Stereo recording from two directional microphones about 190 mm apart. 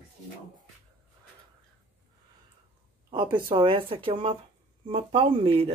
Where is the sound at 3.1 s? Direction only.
25° right (ahead or behind).